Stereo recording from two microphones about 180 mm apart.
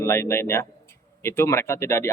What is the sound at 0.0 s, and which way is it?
A man's voice, 15° left (ahead or behind).